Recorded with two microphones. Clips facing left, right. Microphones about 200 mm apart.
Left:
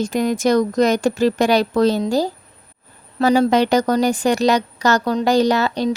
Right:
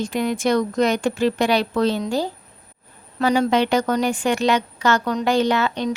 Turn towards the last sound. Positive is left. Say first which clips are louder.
# left 3 dB
turn(degrees=35)  # may be behind; listen again after turning